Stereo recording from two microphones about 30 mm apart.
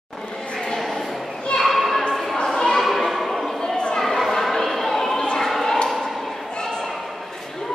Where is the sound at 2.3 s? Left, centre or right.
Centre.